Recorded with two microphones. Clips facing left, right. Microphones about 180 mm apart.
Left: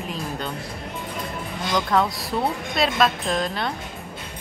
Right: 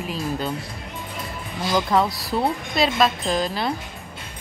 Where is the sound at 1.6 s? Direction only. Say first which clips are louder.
Right 2 dB; 5° right (ahead or behind).